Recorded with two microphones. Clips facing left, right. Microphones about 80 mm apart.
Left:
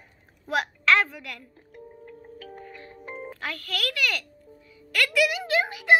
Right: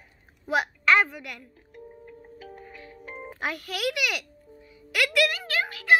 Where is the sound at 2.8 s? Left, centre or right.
Left.